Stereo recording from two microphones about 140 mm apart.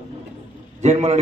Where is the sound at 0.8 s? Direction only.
50° right (ahead or behind).